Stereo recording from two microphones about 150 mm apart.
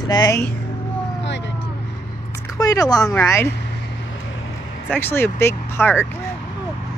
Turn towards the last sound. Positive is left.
turn(degrees=15)  # may be behind; listen again after turning